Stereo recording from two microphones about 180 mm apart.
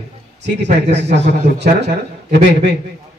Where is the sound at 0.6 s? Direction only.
70° right (ahead or behind).